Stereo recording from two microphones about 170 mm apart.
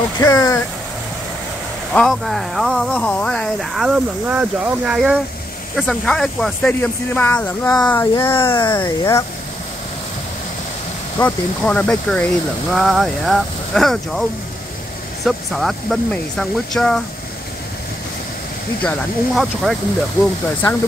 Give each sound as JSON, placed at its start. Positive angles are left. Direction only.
{"t": 0.2, "sound": "speech", "side_deg": 15}
{"t": 2.0, "sound": "speech", "side_deg": 0}
{"t": 11.1, "sound": "speech", "side_deg": 10}
{"t": 15.2, "sound": "speech", "side_deg": 0}
{"t": 18.9, "sound": "speech", "side_deg": 0}